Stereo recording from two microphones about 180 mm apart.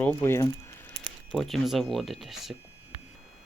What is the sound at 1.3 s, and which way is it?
Speech, centre (ahead or behind).